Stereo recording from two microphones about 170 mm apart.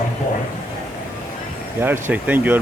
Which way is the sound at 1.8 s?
10° right (ahead or behind).